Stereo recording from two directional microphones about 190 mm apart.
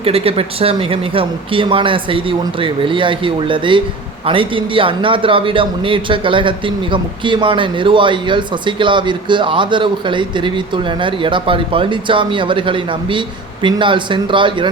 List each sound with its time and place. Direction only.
0.0 s speech: 30° right (ahead or behind)